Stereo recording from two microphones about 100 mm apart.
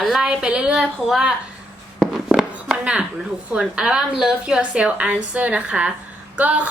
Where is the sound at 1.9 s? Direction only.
5° right (ahead or behind).